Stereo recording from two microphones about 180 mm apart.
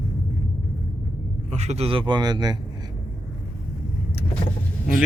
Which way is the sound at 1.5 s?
40° right (ahead or behind).